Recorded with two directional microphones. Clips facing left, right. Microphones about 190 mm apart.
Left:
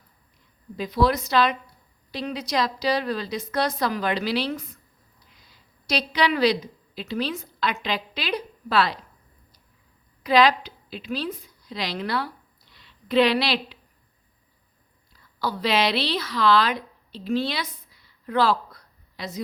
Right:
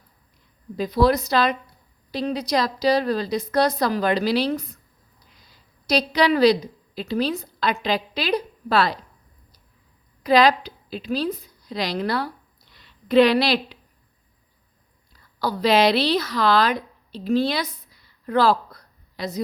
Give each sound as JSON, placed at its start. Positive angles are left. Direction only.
{"t": 0.8, "sound": "a woman's voice", "side_deg": -40}
{"t": 10.2, "sound": "a woman's voice", "side_deg": -40}
{"t": 15.4, "sound": "a woman's voice", "side_deg": -40}
{"t": 18.3, "sound": "a sound", "side_deg": -40}